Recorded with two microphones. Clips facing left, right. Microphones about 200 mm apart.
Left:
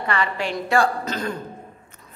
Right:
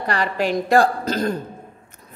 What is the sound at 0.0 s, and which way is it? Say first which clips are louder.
A woman's voice: right 3 dB; 40° right (ahead or behind).